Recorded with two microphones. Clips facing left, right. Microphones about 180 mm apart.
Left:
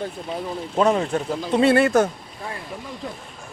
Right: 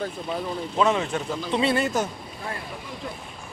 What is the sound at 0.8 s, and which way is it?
Speech, 40° left (ahead or behind).